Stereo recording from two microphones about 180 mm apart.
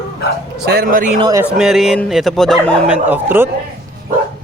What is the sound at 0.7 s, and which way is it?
Speech, 50° right (ahead or behind).